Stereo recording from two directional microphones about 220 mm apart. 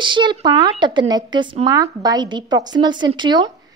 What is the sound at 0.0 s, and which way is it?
Speech, 20° right (ahead or behind).